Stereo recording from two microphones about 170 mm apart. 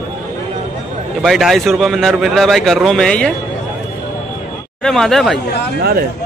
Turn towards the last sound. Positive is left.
turn(degrees=-65)  # may be behind; listen again after turning